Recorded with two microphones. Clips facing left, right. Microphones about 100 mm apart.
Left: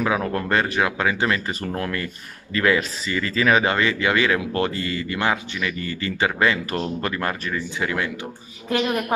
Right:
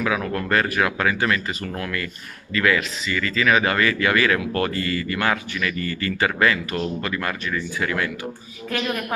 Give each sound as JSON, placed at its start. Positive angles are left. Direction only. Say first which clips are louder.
{"t": 0.0, "sound": "speech", "louder": "left 1 dB", "side_deg": 25}
{"t": 6.7, "sound": "speech", "louder": "even", "side_deg": 35}